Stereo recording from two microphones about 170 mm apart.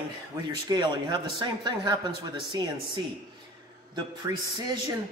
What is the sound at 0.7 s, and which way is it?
A man's voice, 25° right (ahead or behind).